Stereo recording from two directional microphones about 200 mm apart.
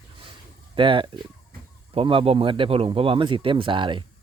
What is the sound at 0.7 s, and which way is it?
Speech, 25° right (ahead or behind).